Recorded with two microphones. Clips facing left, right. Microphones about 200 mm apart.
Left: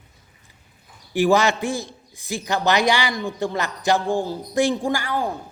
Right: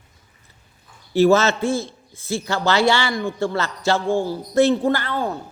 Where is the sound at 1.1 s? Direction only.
15° left (ahead or behind).